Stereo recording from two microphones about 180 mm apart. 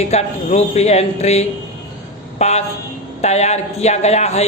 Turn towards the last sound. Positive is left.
turn(degrees=35)  # may be behind; listen again after turning